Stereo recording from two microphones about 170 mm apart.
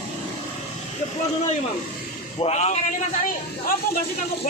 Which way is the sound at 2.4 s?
40° left (ahead or behind).